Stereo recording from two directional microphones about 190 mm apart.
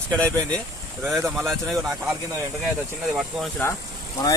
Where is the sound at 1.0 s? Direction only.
5° right (ahead or behind).